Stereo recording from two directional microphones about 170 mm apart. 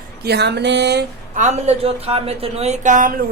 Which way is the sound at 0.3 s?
75° right (ahead or behind).